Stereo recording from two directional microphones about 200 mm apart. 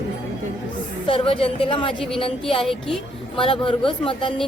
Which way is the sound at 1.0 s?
25° left (ahead or behind).